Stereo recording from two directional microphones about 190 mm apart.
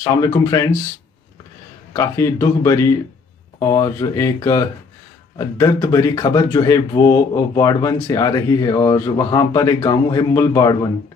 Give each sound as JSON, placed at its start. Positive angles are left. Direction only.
{"t": 0.0, "sound": "speech", "side_deg": 20}
{"t": 2.0, "sound": "speech", "side_deg": 15}